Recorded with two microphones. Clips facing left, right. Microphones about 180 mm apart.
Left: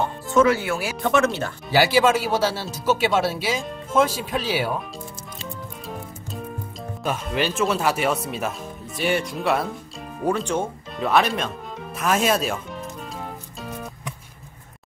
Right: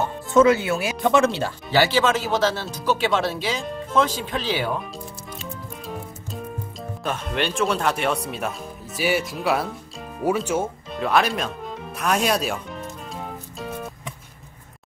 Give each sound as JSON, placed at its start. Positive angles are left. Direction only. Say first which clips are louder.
{"t": 0.4, "sound": "speech", "louder": "right 2 dB", "side_deg": -20}
{"t": 1.3, "sound": "speech", "louder": "even", "side_deg": 10}
{"t": 5.5, "sound": "music", "louder": "even", "side_deg": 0}
{"t": 7.0, "sound": "speech", "louder": "left 1 dB", "side_deg": 5}
{"t": 10.2, "sound": "music", "louder": "right 1 dB", "side_deg": -5}